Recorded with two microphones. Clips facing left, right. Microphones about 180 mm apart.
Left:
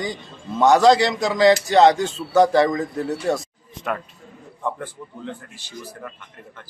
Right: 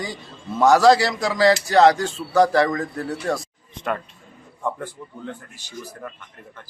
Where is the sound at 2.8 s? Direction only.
20° left (ahead or behind).